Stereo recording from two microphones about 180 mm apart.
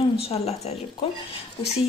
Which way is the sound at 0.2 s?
35° left (ahead or behind).